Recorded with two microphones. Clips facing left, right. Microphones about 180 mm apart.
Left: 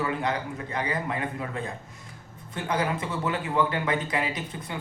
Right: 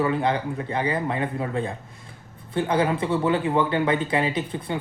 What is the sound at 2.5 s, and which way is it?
Speech, 30° right (ahead or behind).